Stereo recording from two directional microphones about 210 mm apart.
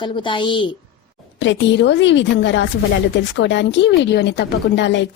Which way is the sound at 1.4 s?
60° left (ahead or behind).